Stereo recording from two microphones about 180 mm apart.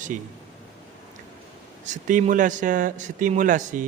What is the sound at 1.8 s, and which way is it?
A man's voice, 45° right (ahead or behind).